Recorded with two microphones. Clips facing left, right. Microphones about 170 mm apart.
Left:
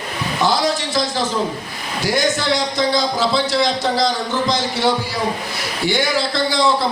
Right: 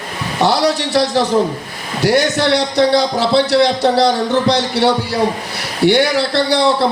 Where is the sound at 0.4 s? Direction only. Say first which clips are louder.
Right 4 dB; 70° right (ahead or behind).